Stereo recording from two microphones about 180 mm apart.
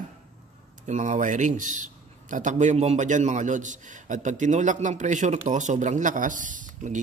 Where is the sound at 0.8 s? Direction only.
40° right (ahead or behind).